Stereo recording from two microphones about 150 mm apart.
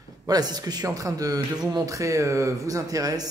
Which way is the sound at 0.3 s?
25° right (ahead or behind).